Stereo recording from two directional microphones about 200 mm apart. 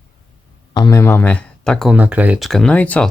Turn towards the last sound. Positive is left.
turn(degrees=5)  # may be behind; listen again after turning